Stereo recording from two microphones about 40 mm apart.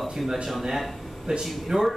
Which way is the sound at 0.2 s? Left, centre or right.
Centre.